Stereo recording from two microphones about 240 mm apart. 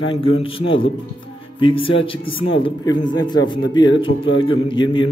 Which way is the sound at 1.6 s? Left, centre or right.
Left.